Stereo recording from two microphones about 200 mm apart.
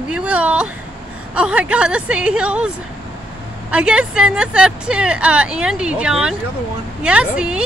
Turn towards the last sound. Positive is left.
turn(degrees=-5)  # may be behind; listen again after turning